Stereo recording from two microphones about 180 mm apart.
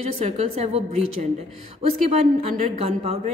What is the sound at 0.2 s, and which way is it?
A woman's voice, 35° right (ahead or behind).